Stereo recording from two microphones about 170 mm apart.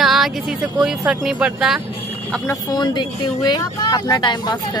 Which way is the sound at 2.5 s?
25° left (ahead or behind).